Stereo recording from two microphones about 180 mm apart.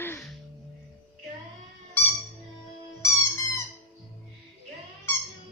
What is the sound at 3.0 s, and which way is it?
Music, 15° left (ahead or behind).